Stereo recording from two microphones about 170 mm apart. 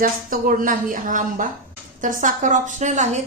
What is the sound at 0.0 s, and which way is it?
A woman's voice, 55° right (ahead or behind).